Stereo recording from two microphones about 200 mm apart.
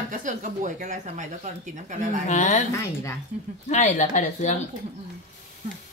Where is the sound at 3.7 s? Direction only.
35° left (ahead or behind).